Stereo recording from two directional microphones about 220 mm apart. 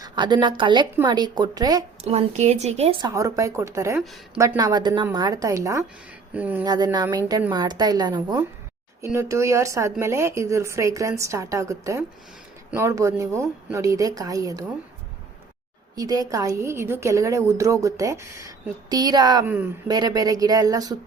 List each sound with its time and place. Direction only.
0.0 s a woman's voice: 20° right (ahead or behind)
2.0 s a woman's voice: 30° right (ahead or behind)
3.1 s a woman's voice: 15° right (ahead or behind)
6.7 s a woman's voice: 20° right (ahead or behind)
16.0 s a woman's voice: 15° right (ahead or behind)